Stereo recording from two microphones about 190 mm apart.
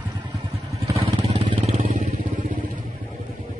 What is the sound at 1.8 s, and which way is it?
Vehicle, 45° right (ahead or behind).